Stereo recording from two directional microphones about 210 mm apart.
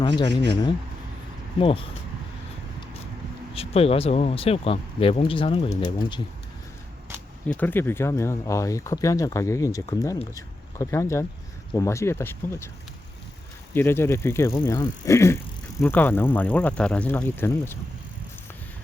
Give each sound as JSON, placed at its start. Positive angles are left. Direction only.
{"t": 0.0, "sound": "speech", "side_deg": 20}
{"t": 3.5, "sound": "speech", "side_deg": 30}
{"t": 7.4, "sound": "speech", "side_deg": 10}
{"t": 13.7, "sound": "speech", "side_deg": 10}